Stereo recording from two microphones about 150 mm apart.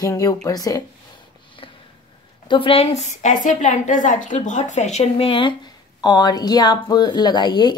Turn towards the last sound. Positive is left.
turn(degrees=30)  # may be behind; listen again after turning